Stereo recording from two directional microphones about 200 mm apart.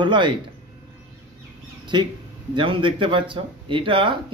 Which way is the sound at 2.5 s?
25° right (ahead or behind).